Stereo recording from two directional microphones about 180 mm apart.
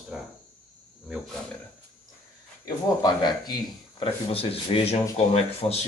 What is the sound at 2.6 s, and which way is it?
Speech, 20° left (ahead or behind).